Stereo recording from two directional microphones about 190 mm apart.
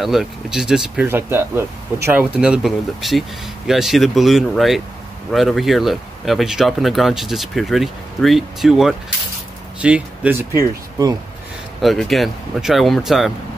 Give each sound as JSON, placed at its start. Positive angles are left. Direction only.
{"t": 0.0, "sound": "speech", "side_deg": 0}
{"t": 11.8, "sound": "speech", "side_deg": 0}